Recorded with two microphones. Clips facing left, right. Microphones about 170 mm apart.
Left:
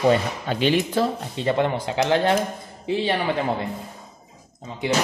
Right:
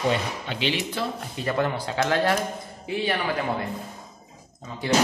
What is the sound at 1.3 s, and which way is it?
Speech, 25° left (ahead or behind).